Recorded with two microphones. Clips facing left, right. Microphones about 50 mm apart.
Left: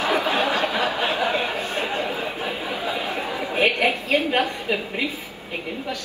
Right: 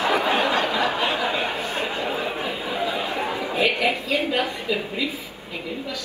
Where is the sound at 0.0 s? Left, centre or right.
Right.